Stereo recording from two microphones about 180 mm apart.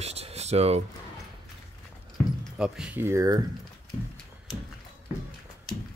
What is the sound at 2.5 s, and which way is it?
Speech, 5° right (ahead or behind).